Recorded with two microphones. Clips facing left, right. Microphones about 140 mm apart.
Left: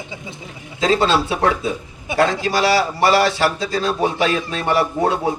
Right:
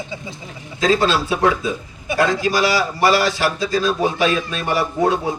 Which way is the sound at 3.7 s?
30° left (ahead or behind).